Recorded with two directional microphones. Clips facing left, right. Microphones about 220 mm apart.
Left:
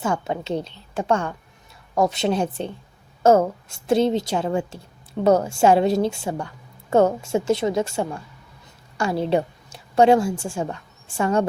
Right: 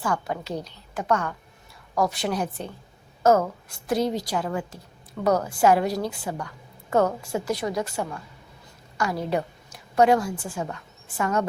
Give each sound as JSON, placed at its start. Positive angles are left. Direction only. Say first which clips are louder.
{"t": 0.0, "sound": "a woman's voice", "louder": "left 3 dB", "side_deg": 25}